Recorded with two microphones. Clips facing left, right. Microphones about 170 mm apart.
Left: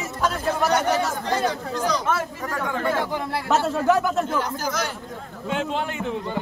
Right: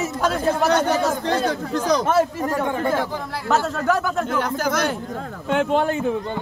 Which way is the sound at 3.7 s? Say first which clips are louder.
Left 1 dB; 10° left (ahead or behind).